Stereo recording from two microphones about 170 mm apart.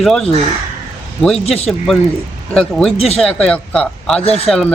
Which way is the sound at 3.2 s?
5° left (ahead or behind).